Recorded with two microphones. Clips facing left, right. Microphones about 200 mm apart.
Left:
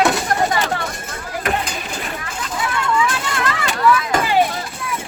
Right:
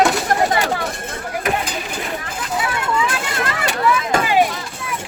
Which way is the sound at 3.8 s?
20° right (ahead or behind).